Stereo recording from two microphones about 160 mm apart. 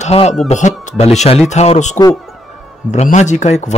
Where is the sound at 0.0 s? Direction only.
40° left (ahead or behind).